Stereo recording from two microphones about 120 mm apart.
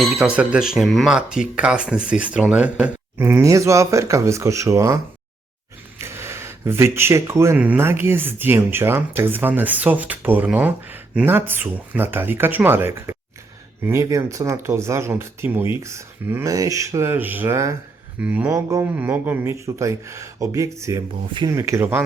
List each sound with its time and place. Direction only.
0.0 s speech: centre (ahead or behind)
3.2 s speech: 20° right (ahead or behind)
6.0 s speech: 20° right (ahead or behind)
18.2 s speech: 15° right (ahead or behind)
18.5 s speech: 25° right (ahead or behind)